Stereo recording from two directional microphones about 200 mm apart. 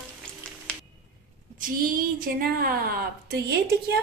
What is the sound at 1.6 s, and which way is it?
A woman's voice, 45° right (ahead or behind).